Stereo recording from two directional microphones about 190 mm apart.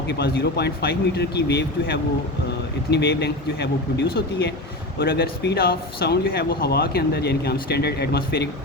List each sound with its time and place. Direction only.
0.1 s speech: 60° left (ahead or behind)